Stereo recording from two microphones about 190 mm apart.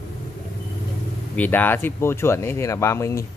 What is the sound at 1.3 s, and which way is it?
A man's voice, 10° left (ahead or behind).